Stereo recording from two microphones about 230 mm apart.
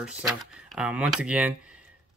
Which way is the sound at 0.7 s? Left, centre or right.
Centre.